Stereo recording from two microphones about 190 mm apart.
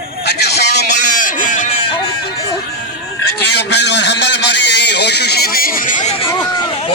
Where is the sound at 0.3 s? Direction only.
60° left (ahead or behind); by 1.7 s 45° left (ahead or behind).